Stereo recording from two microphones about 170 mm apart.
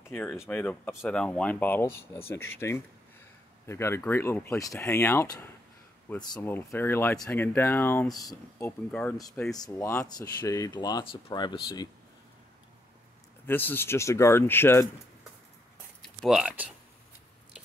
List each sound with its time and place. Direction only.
0.1 s speech: 10° left (ahead or behind)
9.6 s speech: 15° left (ahead or behind)
13.5 s speech: 10° left (ahead or behind)
16.0 s speech: centre (ahead or behind)